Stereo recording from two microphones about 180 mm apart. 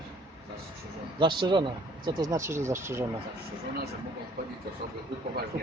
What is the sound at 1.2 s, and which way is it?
Speech, 25° right (ahead or behind).